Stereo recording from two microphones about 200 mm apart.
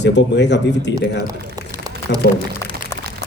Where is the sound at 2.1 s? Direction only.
60° left (ahead or behind).